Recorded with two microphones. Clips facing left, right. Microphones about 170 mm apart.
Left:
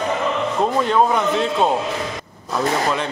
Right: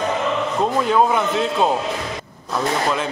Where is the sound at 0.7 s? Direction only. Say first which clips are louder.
Right 1 dB; 5° right (ahead or behind).